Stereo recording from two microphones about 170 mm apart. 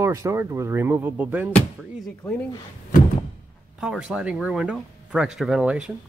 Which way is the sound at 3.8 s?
5° right (ahead or behind).